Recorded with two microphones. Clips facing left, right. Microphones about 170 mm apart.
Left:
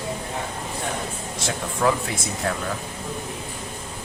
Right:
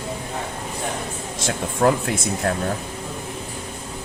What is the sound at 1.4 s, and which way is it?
Speech, 50° right (ahead or behind).